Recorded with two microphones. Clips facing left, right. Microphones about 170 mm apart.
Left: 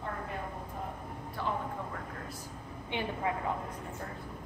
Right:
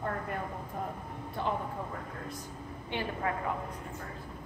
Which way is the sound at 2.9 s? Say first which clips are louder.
Even; 20° left (ahead or behind).